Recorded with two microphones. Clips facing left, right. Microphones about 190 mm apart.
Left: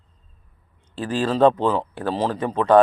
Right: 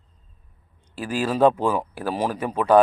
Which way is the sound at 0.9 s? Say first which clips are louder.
Left 2 dB; 10° right (ahead or behind).